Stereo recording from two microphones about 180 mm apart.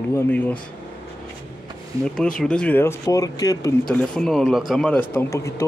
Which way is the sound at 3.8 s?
5° left (ahead or behind).